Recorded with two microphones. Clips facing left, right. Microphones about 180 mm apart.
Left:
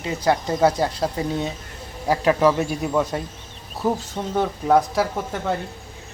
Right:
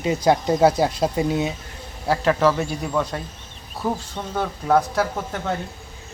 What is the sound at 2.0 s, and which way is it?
Speech, 10° left (ahead or behind).